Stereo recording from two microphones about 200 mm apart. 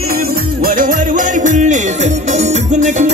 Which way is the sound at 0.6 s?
45° right (ahead or behind).